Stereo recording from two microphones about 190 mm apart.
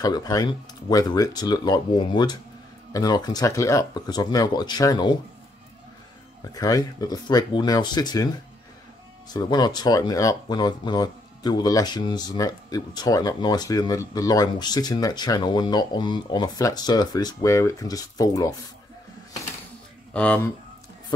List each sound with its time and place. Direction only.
0.0 s speech: 20° left (ahead or behind)
6.4 s speech: 20° left (ahead or behind)
9.3 s speech: 20° left (ahead or behind)
20.1 s speech: 5° left (ahead or behind)